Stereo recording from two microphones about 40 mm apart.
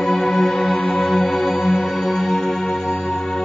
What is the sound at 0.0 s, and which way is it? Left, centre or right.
Music, centre.